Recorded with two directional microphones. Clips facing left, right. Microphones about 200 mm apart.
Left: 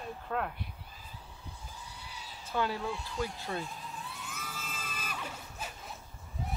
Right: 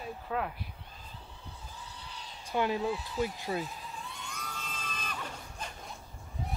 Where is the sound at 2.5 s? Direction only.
20° right (ahead or behind).